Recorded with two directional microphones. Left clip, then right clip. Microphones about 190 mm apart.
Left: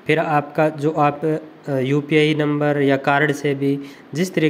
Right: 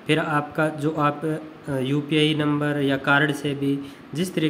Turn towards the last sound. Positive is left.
turn(degrees=25)  # may be behind; listen again after turning